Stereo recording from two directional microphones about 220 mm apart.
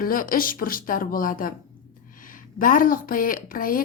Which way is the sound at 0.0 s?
40° left (ahead or behind).